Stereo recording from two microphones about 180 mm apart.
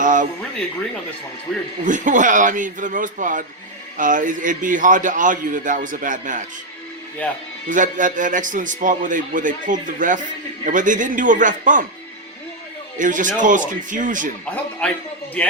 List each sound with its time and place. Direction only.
0.0 s music: 45° right (ahead or behind)
1.8 s a man's voice: 45° right (ahead or behind)
7.7 s a man's voice: 45° right (ahead or behind)
13.0 s a man's voice: 45° right (ahead or behind)
14.8 s a man's voice: 5° left (ahead or behind)